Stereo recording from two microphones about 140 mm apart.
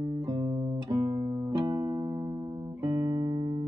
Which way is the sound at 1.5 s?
25° right (ahead or behind).